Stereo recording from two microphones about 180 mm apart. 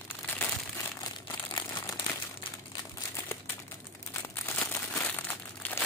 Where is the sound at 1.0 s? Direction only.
20° left (ahead or behind).